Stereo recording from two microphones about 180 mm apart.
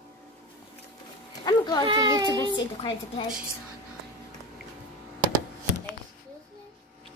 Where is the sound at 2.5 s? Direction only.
30° left (ahead or behind).